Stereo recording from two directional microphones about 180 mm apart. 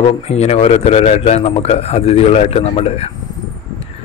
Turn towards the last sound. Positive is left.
turn(degrees=35)  # may be behind; listen again after turning